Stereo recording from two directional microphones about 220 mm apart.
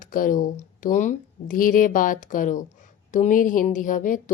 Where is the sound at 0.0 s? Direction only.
40° left (ahead or behind).